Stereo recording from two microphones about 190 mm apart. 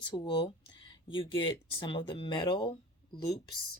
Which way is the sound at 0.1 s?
20° left (ahead or behind).